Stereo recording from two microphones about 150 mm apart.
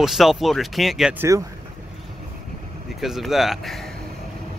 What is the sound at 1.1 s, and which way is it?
Speech, 20° right (ahead or behind).